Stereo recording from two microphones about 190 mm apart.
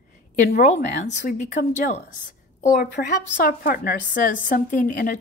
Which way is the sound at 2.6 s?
50° left (ahead or behind).